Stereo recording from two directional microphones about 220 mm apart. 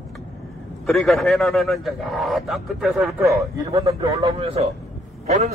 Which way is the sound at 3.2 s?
15° right (ahead or behind).